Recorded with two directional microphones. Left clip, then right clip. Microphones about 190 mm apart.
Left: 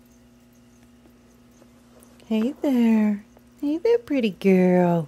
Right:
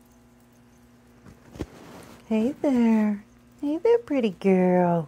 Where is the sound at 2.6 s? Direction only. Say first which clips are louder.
Left 2 dB; 30° left (ahead or behind).